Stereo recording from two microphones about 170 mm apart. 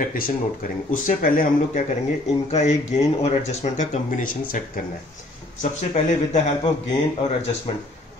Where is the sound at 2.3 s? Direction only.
40° left (ahead or behind); by 4.8 s 55° left (ahead or behind).